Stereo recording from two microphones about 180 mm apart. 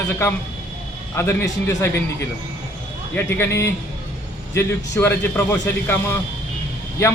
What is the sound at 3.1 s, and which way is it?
A man's voice, 15° left (ahead or behind).